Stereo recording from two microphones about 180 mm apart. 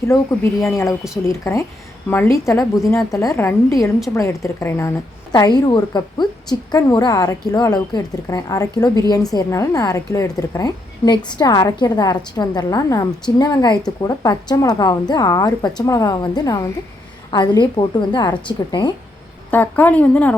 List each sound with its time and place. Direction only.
0.1 s a woman's voice: 15° left (ahead or behind)
19.5 s a woman's voice: 10° left (ahead or behind)